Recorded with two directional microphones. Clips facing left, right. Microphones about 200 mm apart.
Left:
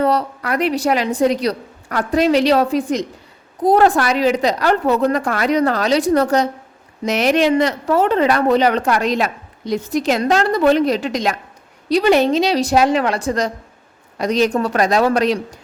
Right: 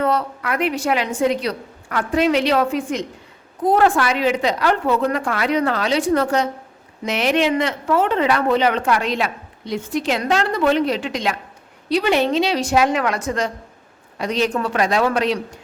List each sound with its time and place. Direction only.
0.0 s speech: 35° left (ahead or behind)